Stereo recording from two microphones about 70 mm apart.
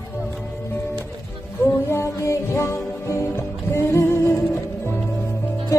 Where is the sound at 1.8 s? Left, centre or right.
Left.